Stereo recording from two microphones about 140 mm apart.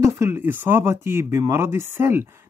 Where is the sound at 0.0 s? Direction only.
20° right (ahead or behind).